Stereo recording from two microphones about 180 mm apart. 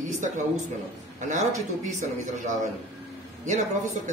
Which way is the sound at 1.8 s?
45° right (ahead or behind).